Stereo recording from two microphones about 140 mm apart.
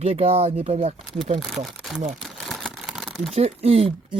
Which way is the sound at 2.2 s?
Centre (ahead or behind).